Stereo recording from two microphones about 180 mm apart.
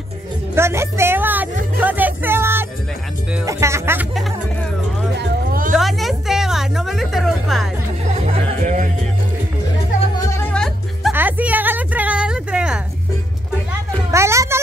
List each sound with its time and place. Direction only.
0.6 s music: 15° right (ahead or behind)
5.1 s hubbub: 60° right (ahead or behind)
5.7 s a sound: centre (ahead or behind)
8.2 s music: 40° right (ahead or behind)
10.5 s music: 5° left (ahead or behind)
11.1 s a sound: 10° right (ahead or behind)
14.1 s music: 15° right (ahead or behind)